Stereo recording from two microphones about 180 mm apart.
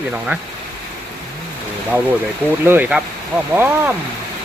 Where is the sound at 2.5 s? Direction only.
10° right (ahead or behind).